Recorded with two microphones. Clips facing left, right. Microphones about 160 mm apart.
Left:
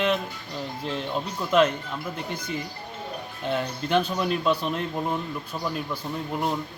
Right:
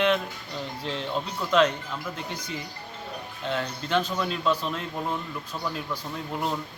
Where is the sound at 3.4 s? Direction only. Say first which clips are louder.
Left 3 dB; 15° left (ahead or behind).